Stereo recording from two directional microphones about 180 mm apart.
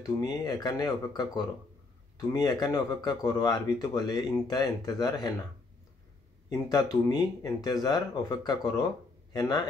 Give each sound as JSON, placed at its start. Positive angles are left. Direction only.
{"t": 0.0, "sound": "speech", "side_deg": 20}
{"t": 6.7, "sound": "speech", "side_deg": 20}